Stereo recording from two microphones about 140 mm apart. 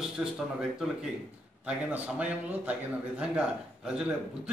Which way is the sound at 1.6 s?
10° right (ahead or behind).